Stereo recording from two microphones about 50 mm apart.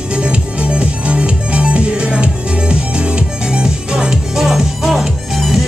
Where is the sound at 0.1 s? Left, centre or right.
Right.